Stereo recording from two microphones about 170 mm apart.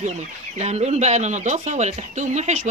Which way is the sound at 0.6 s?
40° right (ahead or behind).